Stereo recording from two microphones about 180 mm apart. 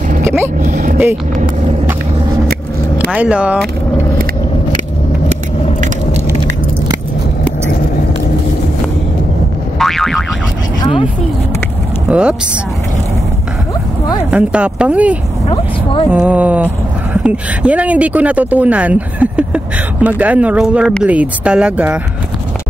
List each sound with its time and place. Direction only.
0.2 s vehicle: 15° right (ahead or behind)
0.6 s vehicle: 45° right (ahead or behind)
3.1 s speech: 5° right (ahead or behind)
9.8 s boing: centre (ahead or behind)
10.8 s a sound: 30° left (ahead or behind)
12.1 s speech: 5° right (ahead or behind)
14.3 s speech: 5° right (ahead or behind)
15.4 s vehicle: 30° left (ahead or behind)
16.1 s speech: 10° right (ahead or behind)